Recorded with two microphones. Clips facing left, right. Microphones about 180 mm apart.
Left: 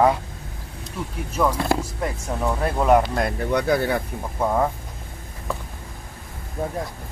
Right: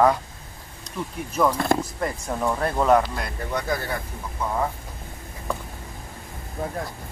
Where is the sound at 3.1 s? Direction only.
65° left (ahead or behind).